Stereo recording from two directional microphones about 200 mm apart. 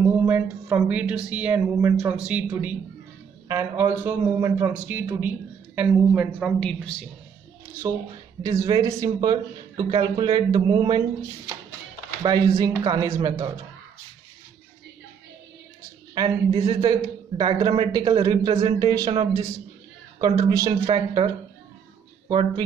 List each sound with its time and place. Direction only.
0.2 s a woman's voice: 10° right (ahead or behind)
8.4 s a woman's voice: 15° right (ahead or behind)
16.2 s a woman's voice: 20° right (ahead or behind)
22.3 s speech: 25° right (ahead or behind)